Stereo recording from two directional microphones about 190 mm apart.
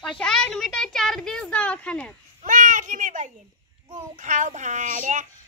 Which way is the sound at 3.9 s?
40° right (ahead or behind).